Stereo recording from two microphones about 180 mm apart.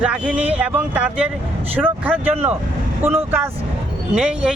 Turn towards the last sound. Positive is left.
turn(degrees=-5)  # may be behind; listen again after turning